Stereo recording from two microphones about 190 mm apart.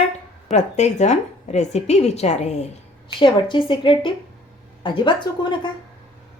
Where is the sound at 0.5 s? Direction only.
35° left (ahead or behind).